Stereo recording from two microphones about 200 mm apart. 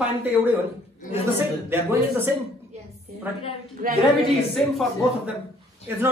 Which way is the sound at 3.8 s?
45° right (ahead or behind).